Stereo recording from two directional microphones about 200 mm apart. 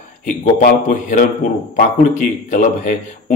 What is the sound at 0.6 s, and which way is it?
Speech, 35° left (ahead or behind).